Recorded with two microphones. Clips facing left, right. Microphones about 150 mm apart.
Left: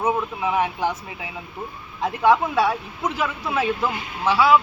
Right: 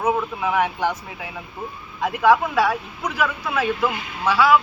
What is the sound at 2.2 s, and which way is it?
Speech, 25° left (ahead or behind).